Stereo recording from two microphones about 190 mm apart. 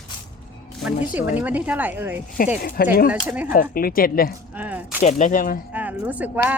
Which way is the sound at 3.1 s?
10° right (ahead or behind).